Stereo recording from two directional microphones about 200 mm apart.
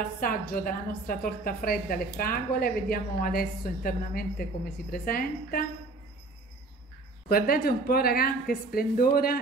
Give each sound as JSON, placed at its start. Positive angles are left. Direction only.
{"t": 0.0, "sound": "a woman's voice", "side_deg": 45}
{"t": 7.2, "sound": "a woman's voice", "side_deg": 50}